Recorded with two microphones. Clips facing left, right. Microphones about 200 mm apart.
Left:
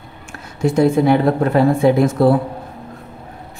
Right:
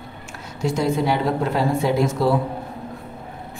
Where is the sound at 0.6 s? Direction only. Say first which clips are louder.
Left 7 dB; 55° left (ahead or behind).